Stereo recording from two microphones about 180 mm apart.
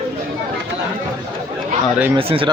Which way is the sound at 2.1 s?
30° right (ahead or behind).